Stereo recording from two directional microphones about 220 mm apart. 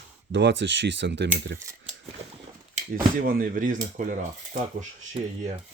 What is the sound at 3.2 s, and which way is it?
Speech, 40° right (ahead or behind).